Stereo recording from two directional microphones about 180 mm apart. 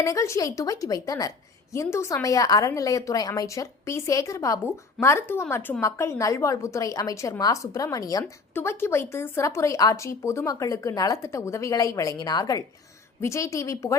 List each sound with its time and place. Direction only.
0.0 s a woman's voice: 15° left (ahead or behind)